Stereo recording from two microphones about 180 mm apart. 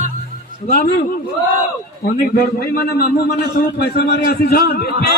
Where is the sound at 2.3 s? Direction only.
55° left (ahead or behind).